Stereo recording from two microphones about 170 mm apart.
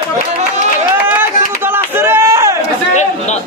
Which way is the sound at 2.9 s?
45° left (ahead or behind).